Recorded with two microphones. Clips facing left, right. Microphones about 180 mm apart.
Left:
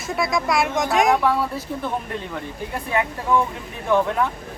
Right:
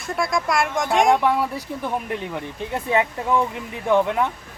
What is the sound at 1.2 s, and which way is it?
Speech, 15° right (ahead or behind).